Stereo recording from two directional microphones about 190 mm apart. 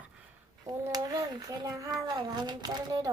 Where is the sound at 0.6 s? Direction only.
20° right (ahead or behind).